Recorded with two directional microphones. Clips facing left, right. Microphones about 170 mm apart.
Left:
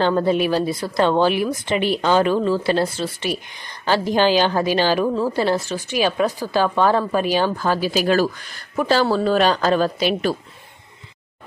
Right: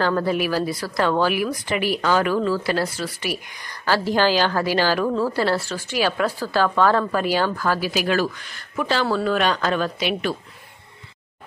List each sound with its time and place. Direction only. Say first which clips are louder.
0.0 s a woman's voice: left 3 dB; 25° left (ahead or behind)